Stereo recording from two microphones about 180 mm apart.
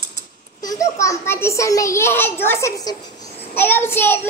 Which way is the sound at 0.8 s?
15° left (ahead or behind).